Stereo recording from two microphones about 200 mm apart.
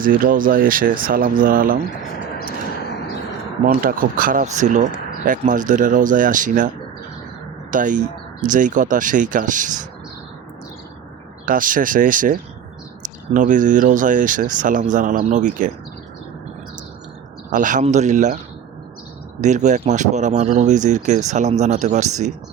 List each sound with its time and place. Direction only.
0.0 s speech: 45° right (ahead or behind)
3.8 s speech: 45° right (ahead or behind)
7.7 s speech: 40° right (ahead or behind)
11.4 s speech: 45° right (ahead or behind)
17.5 s speech: 40° right (ahead or behind)
19.4 s speech: 35° right (ahead or behind)